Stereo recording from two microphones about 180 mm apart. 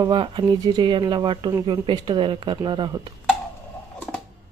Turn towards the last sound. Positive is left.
turn(degrees=5)  # may be behind; listen again after turning